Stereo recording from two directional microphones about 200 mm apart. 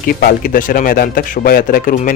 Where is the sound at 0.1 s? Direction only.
45° left (ahead or behind).